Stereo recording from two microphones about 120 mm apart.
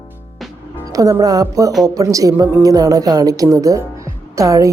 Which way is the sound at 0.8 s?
30° right (ahead or behind).